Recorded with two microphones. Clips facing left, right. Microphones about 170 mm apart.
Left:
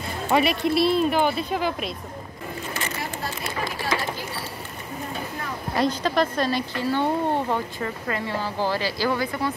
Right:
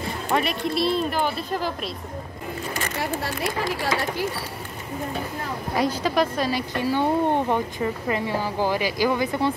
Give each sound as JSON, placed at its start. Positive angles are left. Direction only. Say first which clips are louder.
{"t": 0.3, "sound": "speech", "louder": "left 4 dB", "side_deg": 5}
{"t": 5.8, "sound": "speech", "louder": "even", "side_deg": -10}